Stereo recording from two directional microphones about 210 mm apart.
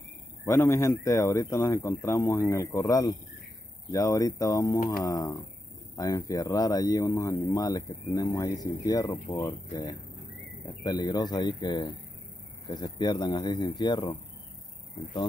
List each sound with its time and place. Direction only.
0.5 s speech: 15° left (ahead or behind)